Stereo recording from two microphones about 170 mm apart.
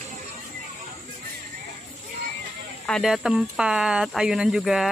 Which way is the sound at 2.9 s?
Centre (ahead or behind).